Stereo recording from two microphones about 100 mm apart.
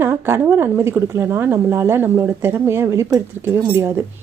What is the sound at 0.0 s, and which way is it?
Speech, 25° right (ahead or behind).